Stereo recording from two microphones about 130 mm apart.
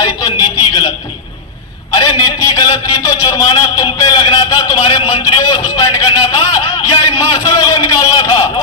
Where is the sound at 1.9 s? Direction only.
30° left (ahead or behind).